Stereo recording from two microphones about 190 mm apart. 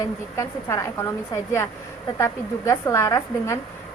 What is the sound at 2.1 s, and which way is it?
A woman's voice, 15° left (ahead or behind).